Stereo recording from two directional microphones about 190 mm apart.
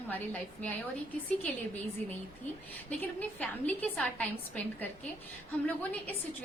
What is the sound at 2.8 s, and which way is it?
A woman's voice, 10° left (ahead or behind).